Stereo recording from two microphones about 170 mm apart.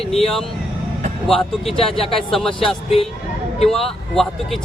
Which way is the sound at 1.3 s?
Centre (ahead or behind).